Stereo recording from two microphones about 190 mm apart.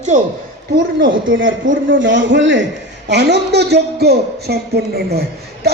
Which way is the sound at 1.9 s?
75° right (ahead or behind).